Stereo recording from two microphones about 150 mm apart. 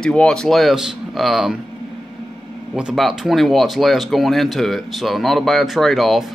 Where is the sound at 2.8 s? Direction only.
5° right (ahead or behind).